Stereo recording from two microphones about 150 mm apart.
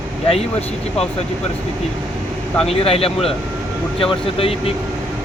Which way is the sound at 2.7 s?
40° left (ahead or behind).